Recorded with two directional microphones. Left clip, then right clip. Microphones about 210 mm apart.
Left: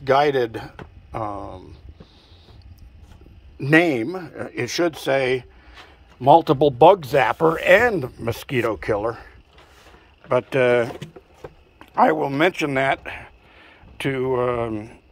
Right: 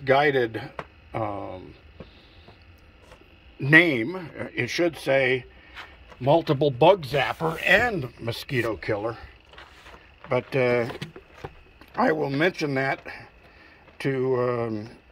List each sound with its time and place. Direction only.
0.0 s speech: 5° left (ahead or behind)
3.5 s speech: 5° left (ahead or behind)
7.2 s speech: 50° left (ahead or behind)
8.0 s speech: 15° left (ahead or behind); by 12.6 s centre (ahead or behind)
12.6 s speech: 10° left (ahead or behind)